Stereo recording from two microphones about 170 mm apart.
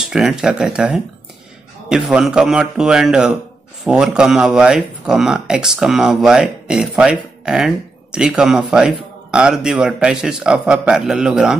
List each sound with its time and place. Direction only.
0.0 s speech: 5° right (ahead or behind)